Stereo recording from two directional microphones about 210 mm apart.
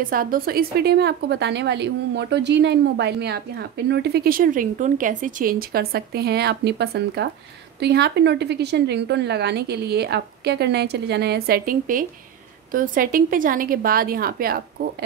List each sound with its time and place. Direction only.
0.0 s a woman's voice: 40° right (ahead or behind)